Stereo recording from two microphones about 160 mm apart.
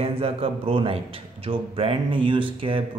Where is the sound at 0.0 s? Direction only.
35° right (ahead or behind).